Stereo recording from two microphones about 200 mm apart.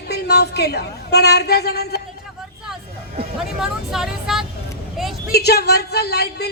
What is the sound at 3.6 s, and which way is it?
Speech, centre (ahead or behind).